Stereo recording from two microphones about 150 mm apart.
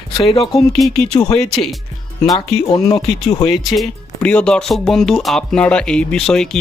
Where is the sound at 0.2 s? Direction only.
35° left (ahead or behind).